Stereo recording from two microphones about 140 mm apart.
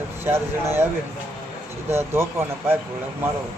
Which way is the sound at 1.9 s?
15° right (ahead or behind).